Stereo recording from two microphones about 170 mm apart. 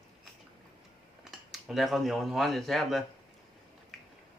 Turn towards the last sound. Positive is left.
turn(degrees=0)  # may be behind; listen again after turning